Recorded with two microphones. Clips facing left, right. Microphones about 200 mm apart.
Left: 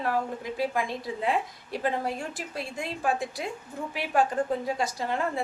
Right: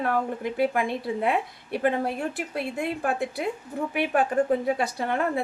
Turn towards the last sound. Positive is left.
turn(degrees=-60)  # may be behind; listen again after turning